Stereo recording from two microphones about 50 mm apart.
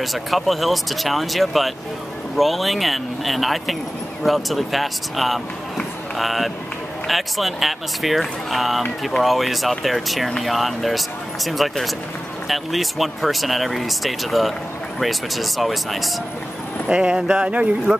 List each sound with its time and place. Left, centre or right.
0.0 s speech: centre
16.8 s speech: centre
17.9 s speech: centre